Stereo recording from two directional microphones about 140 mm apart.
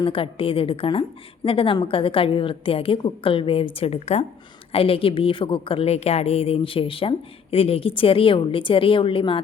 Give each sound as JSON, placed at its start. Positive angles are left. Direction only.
{"t": 0.0, "sound": "a woman's voice", "side_deg": 40}